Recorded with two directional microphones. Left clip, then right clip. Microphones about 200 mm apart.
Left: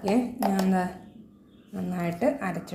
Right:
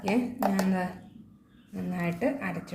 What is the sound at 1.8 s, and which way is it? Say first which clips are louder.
Speech: left 3 dB; 20° left (ahead or behind).